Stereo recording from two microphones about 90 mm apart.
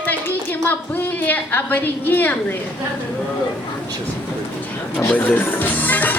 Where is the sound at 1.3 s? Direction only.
20° left (ahead or behind).